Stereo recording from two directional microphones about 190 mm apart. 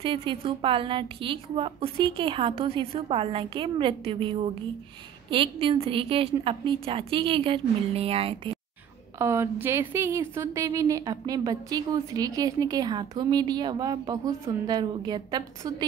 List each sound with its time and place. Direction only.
0.0 s a woman's voice: 25° right (ahead or behind)
9.2 s a woman's voice: 15° right (ahead or behind)